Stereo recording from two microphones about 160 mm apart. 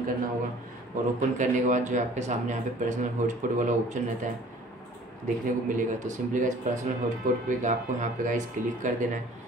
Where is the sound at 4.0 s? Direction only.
50° right (ahead or behind).